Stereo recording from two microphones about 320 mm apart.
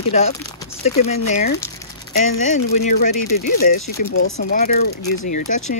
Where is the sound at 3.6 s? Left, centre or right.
Left.